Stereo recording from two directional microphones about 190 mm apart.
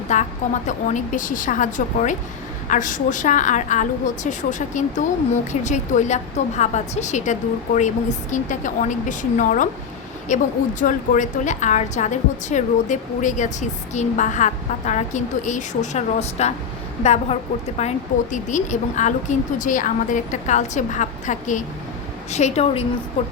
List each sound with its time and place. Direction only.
0.1 s a woman's voice: 40° left (ahead or behind)